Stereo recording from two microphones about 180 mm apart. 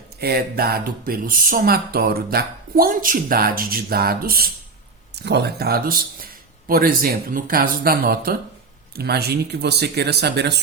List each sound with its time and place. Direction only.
0.2 s speech: 60° right (ahead or behind)
5.1 s speech: 65° right (ahead or behind)